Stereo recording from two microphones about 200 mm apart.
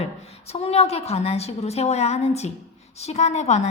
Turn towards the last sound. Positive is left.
turn(degrees=35)  # may be behind; listen again after turning